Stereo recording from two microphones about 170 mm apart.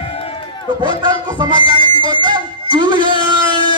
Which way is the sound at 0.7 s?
25° right (ahead or behind).